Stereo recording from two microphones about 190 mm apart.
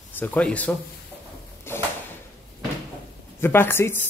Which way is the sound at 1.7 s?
10° left (ahead or behind).